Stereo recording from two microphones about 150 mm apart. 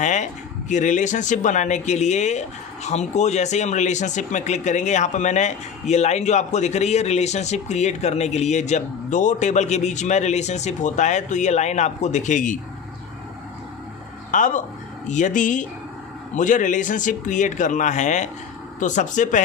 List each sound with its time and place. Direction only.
0.0 s a sound: 55° left (ahead or behind)
0.7 s speech: 55° left (ahead or behind)
14.3 s speech: 60° left (ahead or behind)